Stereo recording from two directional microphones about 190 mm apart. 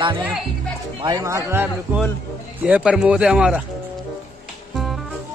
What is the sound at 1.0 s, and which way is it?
A man's voice, 20° right (ahead or behind).